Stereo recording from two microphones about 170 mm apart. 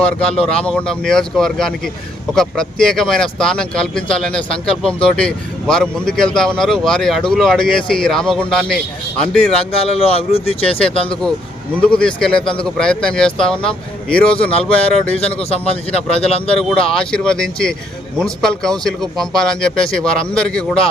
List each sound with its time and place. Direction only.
0.6 s speech: 5° left (ahead or behind)
9.8 s a man's voice: 35° left (ahead or behind)
11.7 s speech: 5° left (ahead or behind)
15.2 s a man's voice: 35° left (ahead or behind)
16.5 s speech: 5° left (ahead or behind)